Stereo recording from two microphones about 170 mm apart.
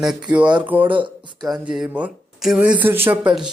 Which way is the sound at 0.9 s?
30° right (ahead or behind).